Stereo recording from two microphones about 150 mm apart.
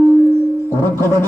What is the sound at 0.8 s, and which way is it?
Speech, 15° left (ahead or behind).